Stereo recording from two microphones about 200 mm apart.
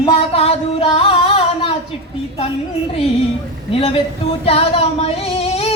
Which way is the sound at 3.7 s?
30° left (ahead or behind).